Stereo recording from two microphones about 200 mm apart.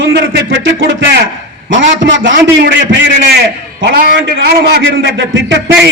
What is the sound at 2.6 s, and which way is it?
A man's voice, 55° right (ahead or behind).